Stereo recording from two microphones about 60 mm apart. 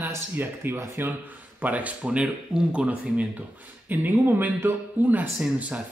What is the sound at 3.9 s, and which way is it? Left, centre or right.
Speech, right.